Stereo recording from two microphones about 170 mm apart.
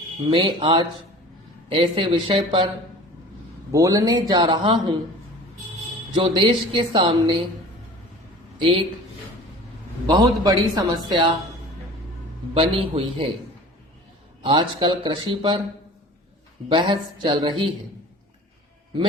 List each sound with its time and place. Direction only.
0.3 s speech: 30° right (ahead or behind)
3.7 s speech: 20° right (ahead or behind)
6.1 s speech: 30° right (ahead or behind)
10.1 s speech: 25° right (ahead or behind)
12.5 s speech: 35° right (ahead or behind)
14.4 s speech: 30° right (ahead or behind)
16.6 s speech: 30° right (ahead or behind)